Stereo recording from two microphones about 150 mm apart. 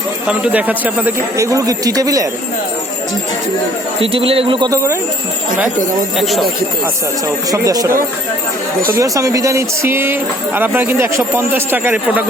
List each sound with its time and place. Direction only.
0.3 s speech: 10° right (ahead or behind); by 2.2 s 25° right (ahead or behind)
4.0 s speech: 40° right (ahead or behind)
4.7 s speech: 20° right (ahead or behind)
6.1 s speech: centre (ahead or behind)
7.5 s speech: 25° right (ahead or behind)